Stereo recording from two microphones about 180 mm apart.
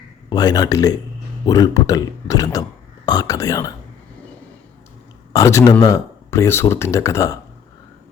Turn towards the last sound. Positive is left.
turn(degrees=15)  # may be behind; listen again after turning